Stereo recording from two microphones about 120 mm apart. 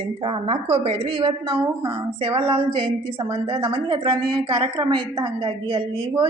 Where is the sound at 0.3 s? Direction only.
45° right (ahead or behind).